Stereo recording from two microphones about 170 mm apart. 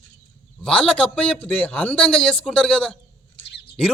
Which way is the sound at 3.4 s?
90° left.